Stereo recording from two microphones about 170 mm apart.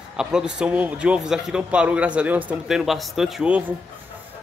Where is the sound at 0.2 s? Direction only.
5° right (ahead or behind).